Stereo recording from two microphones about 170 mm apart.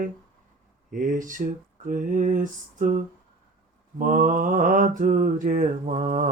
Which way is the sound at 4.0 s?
50° right (ahead or behind).